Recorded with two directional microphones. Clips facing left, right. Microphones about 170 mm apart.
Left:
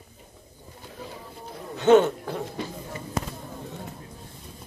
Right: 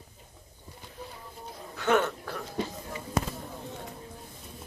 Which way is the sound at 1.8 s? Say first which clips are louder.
Left 9 dB; 20° left (ahead or behind).